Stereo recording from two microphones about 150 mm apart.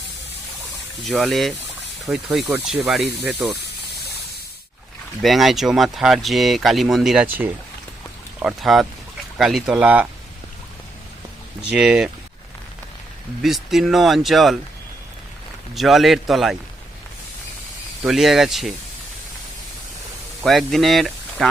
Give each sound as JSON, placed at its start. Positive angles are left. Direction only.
{"t": 1.0, "sound": "speech", "side_deg": 0}
{"t": 5.2, "sound": "speech", "side_deg": 0}
{"t": 11.7, "sound": "speech", "side_deg": -5}
{"t": 13.4, "sound": "speech", "side_deg": 0}
{"t": 15.7, "sound": "speech", "side_deg": 0}
{"t": 18.0, "sound": "speech", "side_deg": 0}
{"t": 20.4, "sound": "speech", "side_deg": 0}